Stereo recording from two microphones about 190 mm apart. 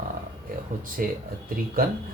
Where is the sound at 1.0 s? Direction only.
45° right (ahead or behind).